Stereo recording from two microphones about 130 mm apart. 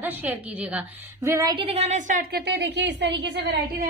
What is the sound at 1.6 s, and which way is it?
Speech, 55° right (ahead or behind).